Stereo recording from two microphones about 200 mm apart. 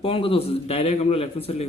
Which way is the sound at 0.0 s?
25° left (ahead or behind).